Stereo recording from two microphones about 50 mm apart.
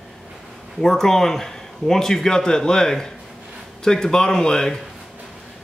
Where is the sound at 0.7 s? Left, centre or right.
Centre.